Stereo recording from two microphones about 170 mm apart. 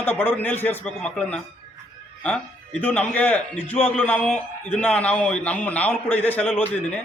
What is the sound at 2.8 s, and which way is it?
A man's voice, 10° left (ahead or behind).